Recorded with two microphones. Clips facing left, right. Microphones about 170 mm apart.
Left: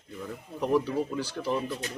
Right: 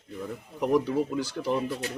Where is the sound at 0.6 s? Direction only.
15° right (ahead or behind).